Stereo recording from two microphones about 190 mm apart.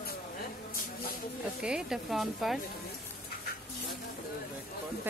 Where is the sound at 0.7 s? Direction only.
50° left (ahead or behind).